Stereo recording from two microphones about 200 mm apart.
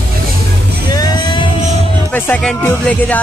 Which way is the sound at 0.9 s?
20° left (ahead or behind).